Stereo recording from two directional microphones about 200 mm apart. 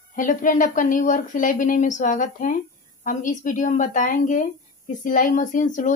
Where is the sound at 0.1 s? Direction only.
40° left (ahead or behind).